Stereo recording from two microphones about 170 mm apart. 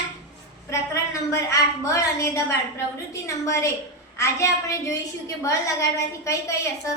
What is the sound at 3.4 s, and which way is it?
A woman's voice, 15° left (ahead or behind).